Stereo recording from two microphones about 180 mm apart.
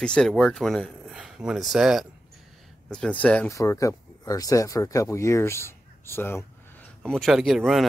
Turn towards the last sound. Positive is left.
turn(degrees=0)  # may be behind; listen again after turning